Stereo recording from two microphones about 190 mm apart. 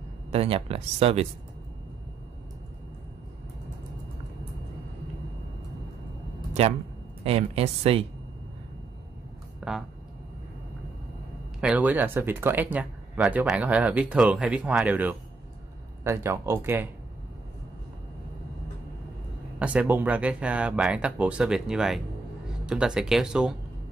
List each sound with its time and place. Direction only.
0.3 s speech: 30° right (ahead or behind)
7.2 s speech: 30° right (ahead or behind)
9.6 s speech: 5° right (ahead or behind)
11.6 s speech: 10° right (ahead or behind)
19.6 s speech: 5° right (ahead or behind)